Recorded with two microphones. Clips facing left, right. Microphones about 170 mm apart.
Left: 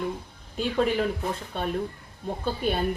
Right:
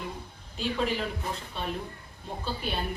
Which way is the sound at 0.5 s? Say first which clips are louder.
Left 5 dB; 50° left (ahead or behind).